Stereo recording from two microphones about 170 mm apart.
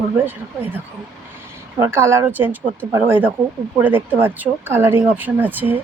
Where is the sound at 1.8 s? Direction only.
15° right (ahead or behind).